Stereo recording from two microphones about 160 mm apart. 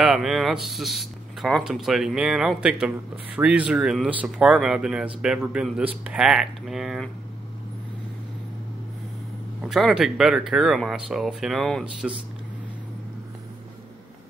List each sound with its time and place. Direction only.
0.0 s speech: 5° right (ahead or behind)
9.6 s speech: centre (ahead or behind)